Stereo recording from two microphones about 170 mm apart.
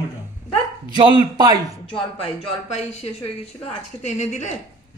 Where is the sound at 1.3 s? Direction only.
25° right (ahead or behind).